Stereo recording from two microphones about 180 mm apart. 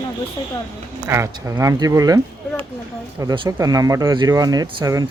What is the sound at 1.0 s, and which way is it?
Speech, 15° right (ahead or behind).